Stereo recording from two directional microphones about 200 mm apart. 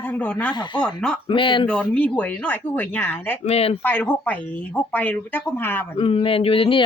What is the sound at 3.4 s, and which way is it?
Speech, 30° left (ahead or behind).